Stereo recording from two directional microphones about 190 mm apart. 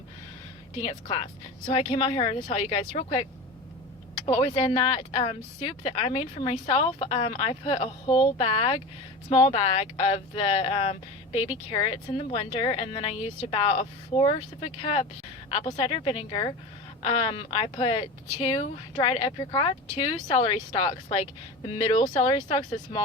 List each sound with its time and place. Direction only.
0.8 s speech: 30° left (ahead or behind)
4.3 s speech: 30° left (ahead or behind)